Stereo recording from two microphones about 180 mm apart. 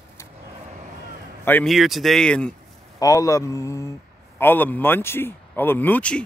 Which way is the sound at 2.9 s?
20° left (ahead or behind).